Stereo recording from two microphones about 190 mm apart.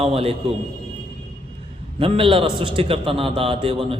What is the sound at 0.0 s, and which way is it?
Speech, 30° right (ahead or behind).